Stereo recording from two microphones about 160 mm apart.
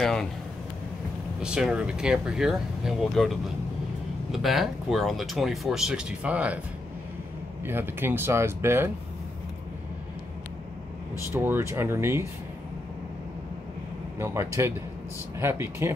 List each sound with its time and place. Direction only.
0.0 s speech: 5° left (ahead or behind)
1.4 s speech: 5° right (ahead or behind)
7.6 s speech: 15° right (ahead or behind)
11.3 s speech: 15° right (ahead or behind)
14.2 s speech: 15° right (ahead or behind)